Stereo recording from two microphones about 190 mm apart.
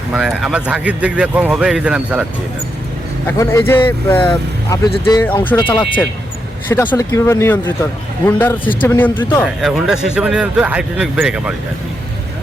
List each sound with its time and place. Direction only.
0.1 s speech: centre (ahead or behind)
3.2 s speech: 15° left (ahead or behind)
9.4 s speech: centre (ahead or behind)